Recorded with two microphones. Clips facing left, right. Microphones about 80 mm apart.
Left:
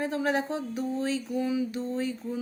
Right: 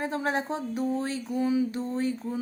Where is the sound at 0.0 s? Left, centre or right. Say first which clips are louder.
Left 1 dB; right.